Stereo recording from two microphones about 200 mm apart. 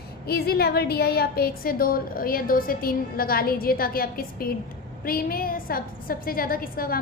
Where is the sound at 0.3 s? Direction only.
50° left (ahead or behind).